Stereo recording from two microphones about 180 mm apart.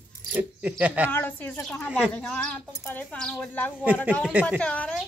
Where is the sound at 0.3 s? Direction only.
10° right (ahead or behind).